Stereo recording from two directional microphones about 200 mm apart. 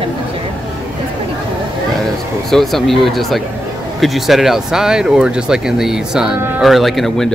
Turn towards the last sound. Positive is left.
turn(degrees=0)  # may be behind; listen again after turning